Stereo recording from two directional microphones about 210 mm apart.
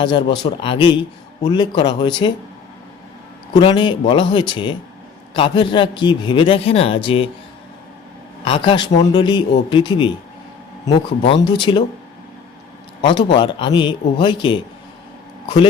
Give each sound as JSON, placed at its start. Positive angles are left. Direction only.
{"t": 0.0, "sound": "speech", "side_deg": 20}
{"t": 3.5, "sound": "speech", "side_deg": 20}
{"t": 8.4, "sound": "speech", "side_deg": 25}
{"t": 13.0, "sound": "speech", "side_deg": 25}